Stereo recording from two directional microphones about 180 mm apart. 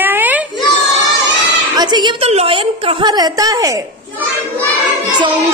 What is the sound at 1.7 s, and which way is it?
A woman's voice, 25° right (ahead or behind).